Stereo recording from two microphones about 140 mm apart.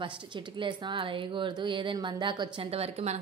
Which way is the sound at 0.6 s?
35° right (ahead or behind).